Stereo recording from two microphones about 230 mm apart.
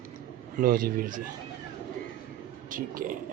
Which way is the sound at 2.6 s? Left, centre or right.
Right.